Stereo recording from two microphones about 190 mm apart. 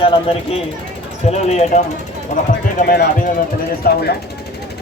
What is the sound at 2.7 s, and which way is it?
Speech, 55° left (ahead or behind).